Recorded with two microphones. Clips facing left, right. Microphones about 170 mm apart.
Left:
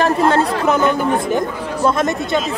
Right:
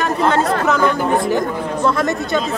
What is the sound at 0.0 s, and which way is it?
Speech, 30° left (ahead or behind).